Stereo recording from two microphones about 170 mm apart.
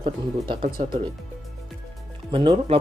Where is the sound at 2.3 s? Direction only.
35° right (ahead or behind).